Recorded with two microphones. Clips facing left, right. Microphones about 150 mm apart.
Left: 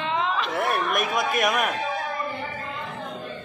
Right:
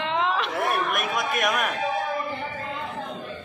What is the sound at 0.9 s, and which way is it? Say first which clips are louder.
Speech: left 2 dB; centre (ahead or behind).